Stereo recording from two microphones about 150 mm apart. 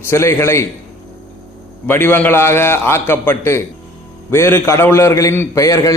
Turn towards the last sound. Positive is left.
turn(degrees=20)  # may be behind; listen again after turning